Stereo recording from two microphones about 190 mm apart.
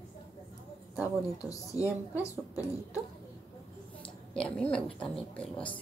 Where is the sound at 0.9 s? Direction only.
10° right (ahead or behind).